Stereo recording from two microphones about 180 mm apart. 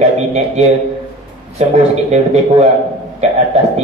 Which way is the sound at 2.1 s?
35° right (ahead or behind).